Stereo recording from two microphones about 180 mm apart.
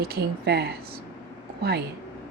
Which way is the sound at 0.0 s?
60° right (ahead or behind).